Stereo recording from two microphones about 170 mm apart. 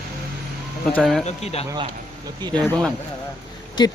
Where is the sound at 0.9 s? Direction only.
5° left (ahead or behind).